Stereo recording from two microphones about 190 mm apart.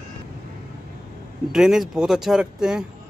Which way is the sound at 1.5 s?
Centre (ahead or behind).